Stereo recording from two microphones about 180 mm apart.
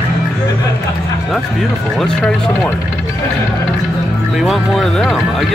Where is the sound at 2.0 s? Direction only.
5° left (ahead or behind).